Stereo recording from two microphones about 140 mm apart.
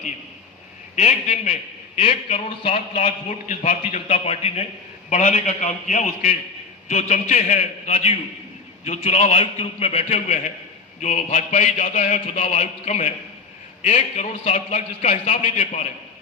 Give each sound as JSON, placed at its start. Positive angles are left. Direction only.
{"t": 0.9, "sound": "a man's voice", "side_deg": 60}
{"t": 2.0, "sound": "a man's voice", "side_deg": 50}
{"t": 5.0, "sound": "a man's voice", "side_deg": 60}
{"t": 11.0, "sound": "a man's voice", "side_deg": 65}